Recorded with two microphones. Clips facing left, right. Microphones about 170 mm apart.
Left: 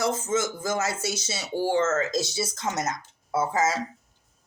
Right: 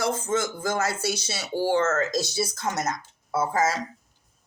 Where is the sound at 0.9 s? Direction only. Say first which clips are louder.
Right 2 dB; 25° left (ahead or behind).